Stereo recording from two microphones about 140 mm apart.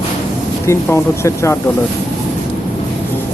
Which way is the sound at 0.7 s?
20° left (ahead or behind).